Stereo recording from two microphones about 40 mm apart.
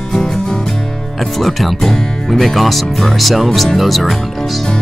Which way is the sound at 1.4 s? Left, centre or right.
Centre.